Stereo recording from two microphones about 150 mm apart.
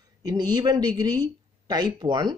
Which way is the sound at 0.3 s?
25° right (ahead or behind).